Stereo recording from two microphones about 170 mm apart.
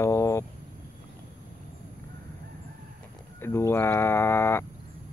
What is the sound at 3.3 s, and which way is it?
Speech, 15° left (ahead or behind).